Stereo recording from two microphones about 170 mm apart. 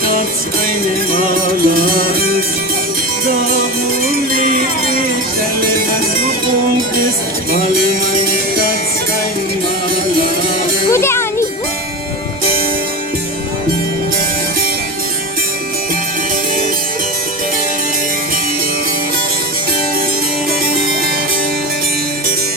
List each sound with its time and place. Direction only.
1.6 s music: 60° right (ahead or behind)
7.5 s music: 55° right (ahead or behind)
10.9 s music: 15° left (ahead or behind)